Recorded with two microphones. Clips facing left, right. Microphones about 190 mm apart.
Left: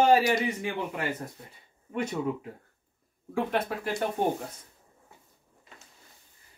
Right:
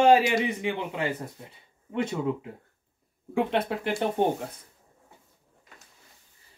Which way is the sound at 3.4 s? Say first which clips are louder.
Right 2 dB; 25° right (ahead or behind).